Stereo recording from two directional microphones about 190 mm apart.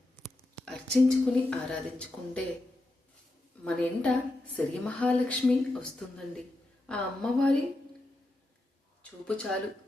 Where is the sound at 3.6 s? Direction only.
5° left (ahead or behind).